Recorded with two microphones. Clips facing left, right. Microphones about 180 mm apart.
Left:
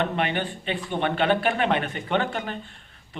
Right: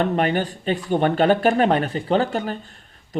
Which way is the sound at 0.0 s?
40° right (ahead or behind).